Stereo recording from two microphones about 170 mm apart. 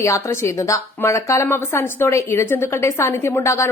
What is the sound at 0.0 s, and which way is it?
A woman's voice, 15° left (ahead or behind).